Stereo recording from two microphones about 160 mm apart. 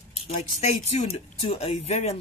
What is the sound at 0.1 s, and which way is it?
Speech, 40° left (ahead or behind).